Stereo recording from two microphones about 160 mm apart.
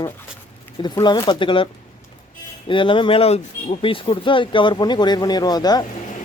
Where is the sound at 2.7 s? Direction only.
30° left (ahead or behind).